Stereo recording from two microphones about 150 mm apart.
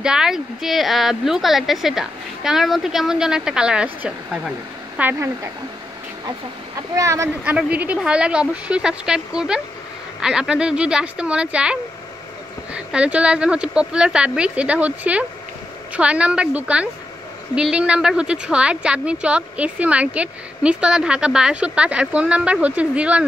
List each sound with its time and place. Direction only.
0.0 s a woman's voice: 5° right (ahead or behind)
7.0 s speech: 20° right (ahead or behind)
7.4 s a woman's voice: 10° right (ahead or behind)